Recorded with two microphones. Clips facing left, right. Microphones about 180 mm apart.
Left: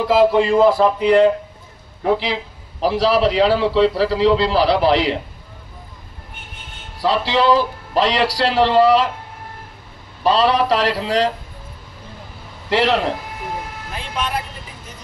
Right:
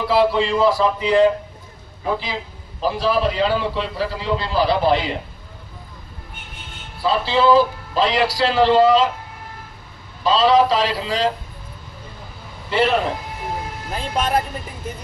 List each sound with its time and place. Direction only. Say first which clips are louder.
0.0 s a man's voice: left 3 dB; 45° left (ahead or behind)
2.0 s a man's voice: left 5 dB; 70° left (ahead or behind)
7.0 s a man's voice: left 1 dB; 75° left (ahead or behind)
10.2 s a man's voice: right 1 dB; 65° left (ahead or behind)
12.6 s a man's voice: left 1 dB; 75° left (ahead or behind)
13.9 s speech: right 4 dB; 45° right (ahead or behind)